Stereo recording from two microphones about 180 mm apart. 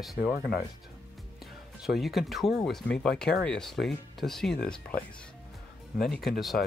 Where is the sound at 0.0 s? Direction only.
Centre (ahead or behind).